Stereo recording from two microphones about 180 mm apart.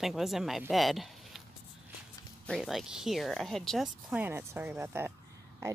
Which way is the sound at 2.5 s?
Centre (ahead or behind).